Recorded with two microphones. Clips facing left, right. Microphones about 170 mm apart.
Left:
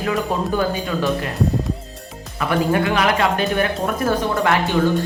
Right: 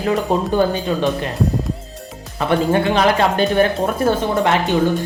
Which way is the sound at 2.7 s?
30° right (ahead or behind).